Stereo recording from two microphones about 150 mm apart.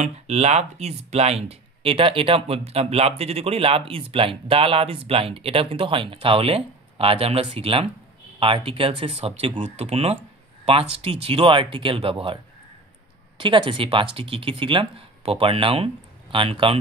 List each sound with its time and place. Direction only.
0.0 s speech: 45° right (ahead or behind)
13.4 s speech: 35° right (ahead or behind)